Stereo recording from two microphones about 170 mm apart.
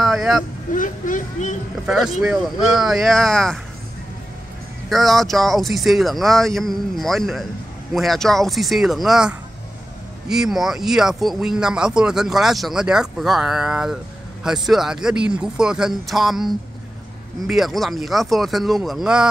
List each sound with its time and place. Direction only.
0.0 s vehicle: centre (ahead or behind)
0.7 s speech: 50° left (ahead or behind)
1.9 s speech: 5° right (ahead or behind)
4.8 s speech: centre (ahead or behind)